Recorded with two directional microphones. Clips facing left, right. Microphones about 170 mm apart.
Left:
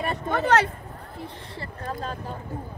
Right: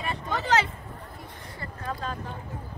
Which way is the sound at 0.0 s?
50° left (ahead or behind).